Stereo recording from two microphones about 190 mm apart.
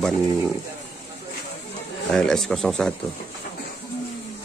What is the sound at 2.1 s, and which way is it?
Speech, centre (ahead or behind).